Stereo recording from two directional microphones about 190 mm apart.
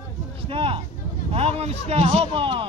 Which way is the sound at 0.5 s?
30° right (ahead or behind).